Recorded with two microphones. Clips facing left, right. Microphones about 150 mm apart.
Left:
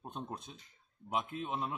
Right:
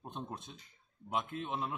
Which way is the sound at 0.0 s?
Centre (ahead or behind).